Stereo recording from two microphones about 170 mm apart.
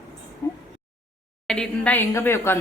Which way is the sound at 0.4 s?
15° left (ahead or behind).